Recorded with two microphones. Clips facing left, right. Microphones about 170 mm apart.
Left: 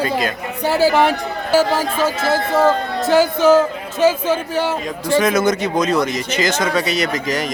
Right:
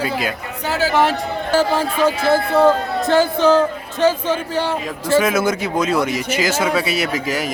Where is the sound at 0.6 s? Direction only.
35° left (ahead or behind).